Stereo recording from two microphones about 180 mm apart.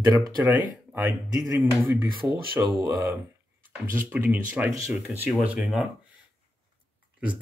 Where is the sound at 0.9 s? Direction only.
10° right (ahead or behind).